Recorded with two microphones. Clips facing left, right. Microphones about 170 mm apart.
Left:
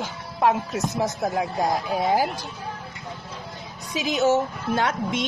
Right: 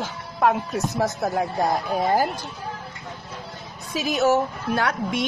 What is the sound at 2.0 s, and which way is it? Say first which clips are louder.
Speech: right 1 dB; 5° left (ahead or behind).